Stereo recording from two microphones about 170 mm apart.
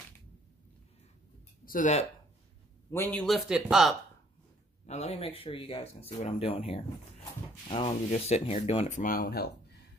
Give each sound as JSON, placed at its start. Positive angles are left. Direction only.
{"t": 1.7, "sound": "speech", "side_deg": 45}
{"t": 2.9, "sound": "a man's voice", "side_deg": 10}
{"t": 4.8, "sound": "speech", "side_deg": 40}